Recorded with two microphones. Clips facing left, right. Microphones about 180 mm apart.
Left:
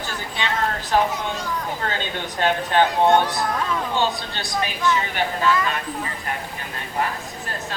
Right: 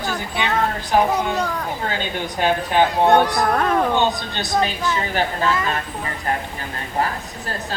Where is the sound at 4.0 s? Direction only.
20° right (ahead or behind).